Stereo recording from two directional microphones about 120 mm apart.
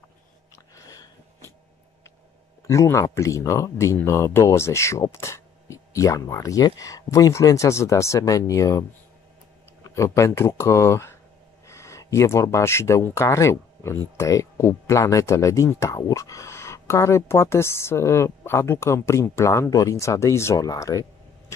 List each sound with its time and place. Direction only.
0.7 s a sound: 30° left (ahead or behind)
2.6 s speech: 25° left (ahead or behind)
9.8 s speech: 25° left (ahead or behind)